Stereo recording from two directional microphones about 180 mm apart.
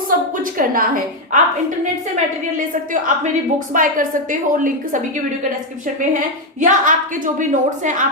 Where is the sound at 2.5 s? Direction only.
45° right (ahead or behind).